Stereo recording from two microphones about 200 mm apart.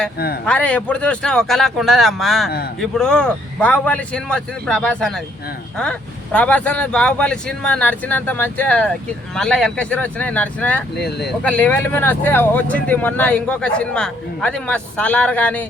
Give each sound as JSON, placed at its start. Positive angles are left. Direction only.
{"t": 0.4, "sound": "speech", "side_deg": 5}
{"t": 10.9, "sound": "speech", "side_deg": 55}
{"t": 11.3, "sound": "speech", "side_deg": 5}